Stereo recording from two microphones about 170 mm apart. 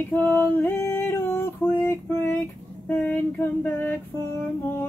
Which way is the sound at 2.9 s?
10° left (ahead or behind).